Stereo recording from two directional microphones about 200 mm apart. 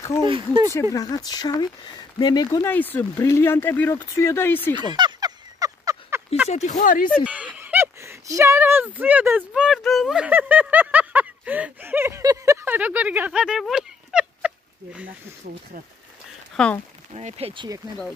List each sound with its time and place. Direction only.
0.2 s speech: 20° right (ahead or behind)
0.9 s speech: 20° left (ahead or behind)
2.7 s speech: 10° left (ahead or behind)
4.8 s a sound: 20° right (ahead or behind)
6.5 s speech: 35° left (ahead or behind)
7.2 s speech: 5° right (ahead or behind)
15.5 s speech: 45° right (ahead or behind)
16.5 s speech: 5° left (ahead or behind)
17.1 s speech: 35° right (ahead or behind)